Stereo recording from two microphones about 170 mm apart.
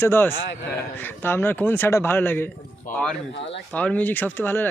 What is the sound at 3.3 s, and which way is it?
Speech, 90° left.